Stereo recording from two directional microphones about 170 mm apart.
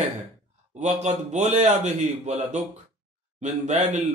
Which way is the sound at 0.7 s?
40° right (ahead or behind).